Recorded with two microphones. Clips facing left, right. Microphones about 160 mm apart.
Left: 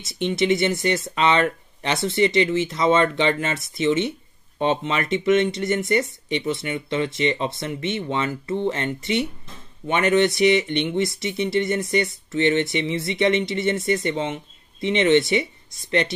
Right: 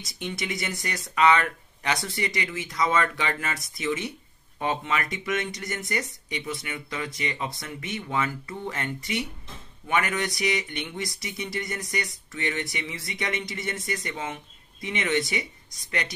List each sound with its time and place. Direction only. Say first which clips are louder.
0.0 s speech: left 11 dB; 25° left (ahead or behind)